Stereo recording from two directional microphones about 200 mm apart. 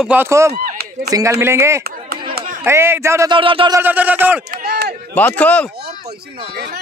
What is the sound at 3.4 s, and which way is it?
Speech, 25° right (ahead or behind).